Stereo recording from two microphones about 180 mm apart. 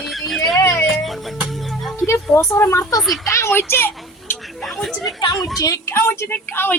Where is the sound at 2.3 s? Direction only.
15° left (ahead or behind).